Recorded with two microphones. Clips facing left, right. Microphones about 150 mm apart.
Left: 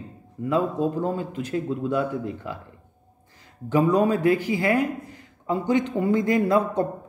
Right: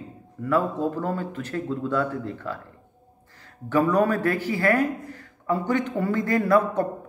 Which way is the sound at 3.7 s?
15° left (ahead or behind).